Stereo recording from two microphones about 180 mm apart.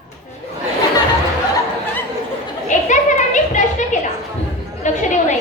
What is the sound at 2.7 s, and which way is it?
Children playing, 45° left (ahead or behind).